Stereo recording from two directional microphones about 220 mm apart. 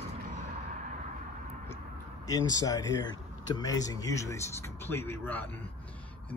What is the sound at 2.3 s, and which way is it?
Speech, 15° left (ahead or behind).